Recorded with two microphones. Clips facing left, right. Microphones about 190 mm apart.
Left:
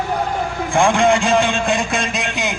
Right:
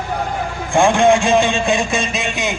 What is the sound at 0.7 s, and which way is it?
Speech, 15° right (ahead or behind).